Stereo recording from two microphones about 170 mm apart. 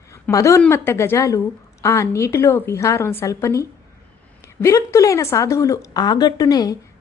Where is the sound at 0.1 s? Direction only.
20° left (ahead or behind).